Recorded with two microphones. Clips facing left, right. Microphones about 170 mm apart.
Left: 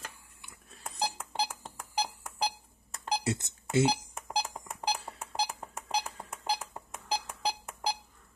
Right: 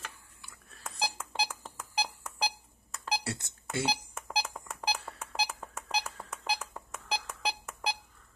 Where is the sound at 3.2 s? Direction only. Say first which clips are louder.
Left 5 dB; 20° left (ahead or behind).